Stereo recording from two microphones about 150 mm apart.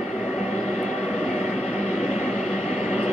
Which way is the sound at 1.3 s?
40° left (ahead or behind).